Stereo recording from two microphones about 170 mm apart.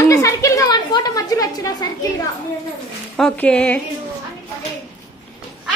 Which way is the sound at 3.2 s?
5° left (ahead or behind).